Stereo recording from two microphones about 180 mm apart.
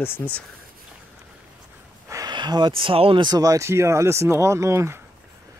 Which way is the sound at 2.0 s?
20° right (ahead or behind).